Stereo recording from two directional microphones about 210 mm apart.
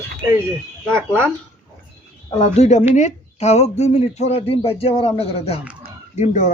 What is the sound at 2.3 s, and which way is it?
Speech, 30° left (ahead or behind).